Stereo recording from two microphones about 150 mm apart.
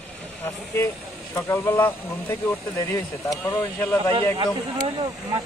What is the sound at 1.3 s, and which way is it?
Speech, 15° left (ahead or behind).